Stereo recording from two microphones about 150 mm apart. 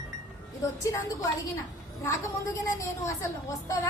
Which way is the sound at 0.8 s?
20° left (ahead or behind).